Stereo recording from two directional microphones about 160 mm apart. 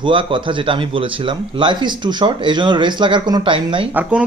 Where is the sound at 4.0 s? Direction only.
10° right (ahead or behind).